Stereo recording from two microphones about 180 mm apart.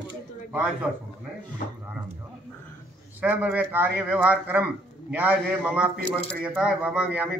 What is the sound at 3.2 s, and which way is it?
A man's voice, 10° right (ahead or behind).